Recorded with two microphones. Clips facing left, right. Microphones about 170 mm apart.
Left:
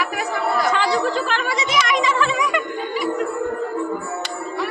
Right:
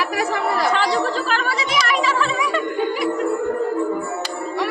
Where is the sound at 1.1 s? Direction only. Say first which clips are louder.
Even; 35° right (ahead or behind).